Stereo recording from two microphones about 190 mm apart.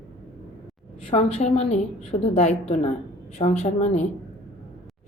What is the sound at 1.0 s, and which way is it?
A woman's voice, 35° left (ahead or behind).